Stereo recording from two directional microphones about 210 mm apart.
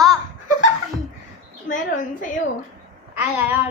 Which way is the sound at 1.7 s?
35° left (ahead or behind).